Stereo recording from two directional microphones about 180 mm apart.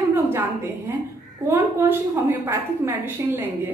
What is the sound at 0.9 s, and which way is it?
A woman's voice, 15° right (ahead or behind).